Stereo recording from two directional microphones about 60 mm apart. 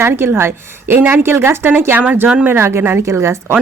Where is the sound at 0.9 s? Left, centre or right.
Right.